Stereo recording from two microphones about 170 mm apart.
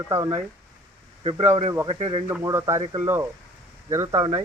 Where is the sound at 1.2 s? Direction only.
30° right (ahead or behind).